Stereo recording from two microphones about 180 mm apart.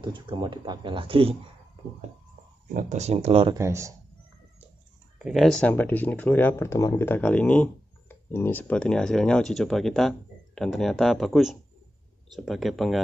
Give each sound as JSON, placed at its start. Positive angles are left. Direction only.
{"t": 0.0, "sound": "speech", "side_deg": -25}
{"t": 2.7, "sound": "speech", "side_deg": -45}
{"t": 3.5, "sound": "speech", "side_deg": -15}
{"t": 5.2, "sound": "speech", "side_deg": 0}